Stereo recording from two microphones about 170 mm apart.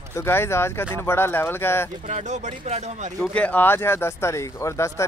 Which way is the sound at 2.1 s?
45° right (ahead or behind).